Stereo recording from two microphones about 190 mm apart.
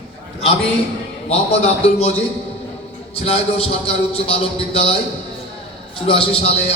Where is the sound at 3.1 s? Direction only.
30° left (ahead or behind).